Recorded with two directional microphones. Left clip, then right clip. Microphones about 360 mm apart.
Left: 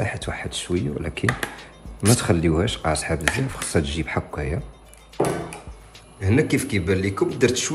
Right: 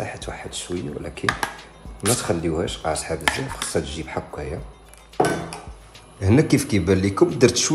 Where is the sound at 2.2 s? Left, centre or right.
Centre.